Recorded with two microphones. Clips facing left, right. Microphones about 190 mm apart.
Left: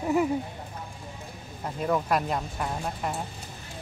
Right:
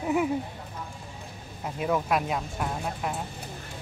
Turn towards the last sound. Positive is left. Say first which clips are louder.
# even
turn(degrees=0)  # may be behind; listen again after turning